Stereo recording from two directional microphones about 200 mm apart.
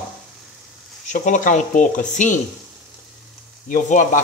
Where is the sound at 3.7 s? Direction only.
40° left (ahead or behind).